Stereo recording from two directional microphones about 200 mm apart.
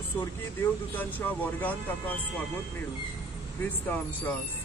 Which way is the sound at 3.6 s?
10° left (ahead or behind).